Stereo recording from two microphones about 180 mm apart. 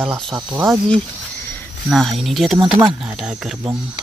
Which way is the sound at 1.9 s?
Centre (ahead or behind).